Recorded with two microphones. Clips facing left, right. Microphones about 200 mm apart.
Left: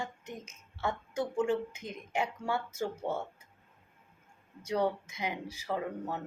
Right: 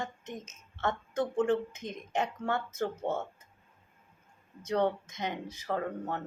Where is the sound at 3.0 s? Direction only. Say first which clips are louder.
Right 2 dB; 20° right (ahead or behind).